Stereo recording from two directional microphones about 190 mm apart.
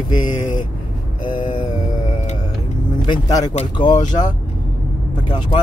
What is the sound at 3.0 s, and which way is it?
Speech, 20° left (ahead or behind).